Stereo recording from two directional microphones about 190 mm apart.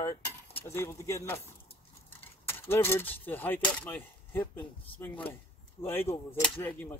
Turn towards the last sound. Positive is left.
turn(degrees=10)  # may be behind; listen again after turning